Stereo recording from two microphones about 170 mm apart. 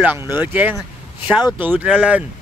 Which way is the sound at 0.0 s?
10° right (ahead or behind).